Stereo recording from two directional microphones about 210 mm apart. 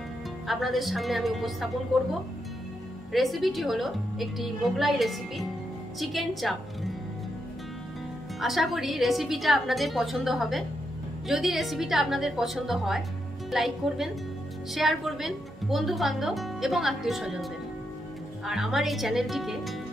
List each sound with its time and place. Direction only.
0.5 s a woman's voice: centre (ahead or behind)
3.1 s a woman's voice: centre (ahead or behind)
8.4 s a woman's voice: centre (ahead or behind)